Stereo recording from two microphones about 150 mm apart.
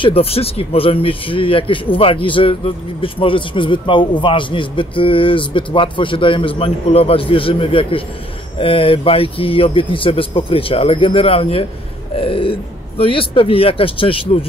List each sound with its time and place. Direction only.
0.0 s speech: 40° left (ahead or behind)